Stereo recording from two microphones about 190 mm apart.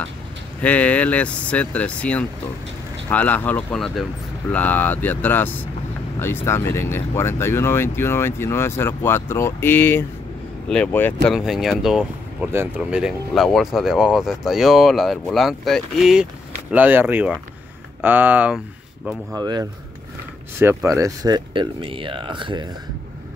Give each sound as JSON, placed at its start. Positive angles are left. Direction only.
{"t": 0.6, "sound": "speech", "side_deg": 10}
{"t": 11.2, "sound": "speech", "side_deg": 0}
{"t": 19.3, "sound": "speech", "side_deg": -20}